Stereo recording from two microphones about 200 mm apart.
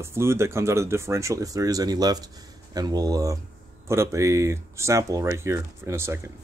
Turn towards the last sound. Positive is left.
turn(degrees=-10)  # may be behind; listen again after turning